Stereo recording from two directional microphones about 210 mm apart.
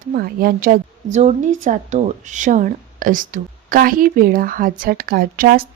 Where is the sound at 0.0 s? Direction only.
45° right (ahead or behind).